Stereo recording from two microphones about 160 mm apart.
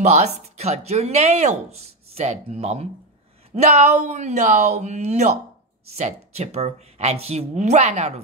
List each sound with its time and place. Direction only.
0.0 s speech: 45° right (ahead or behind)